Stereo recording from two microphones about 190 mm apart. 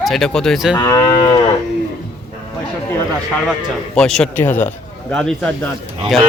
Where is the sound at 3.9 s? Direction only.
5° left (ahead or behind).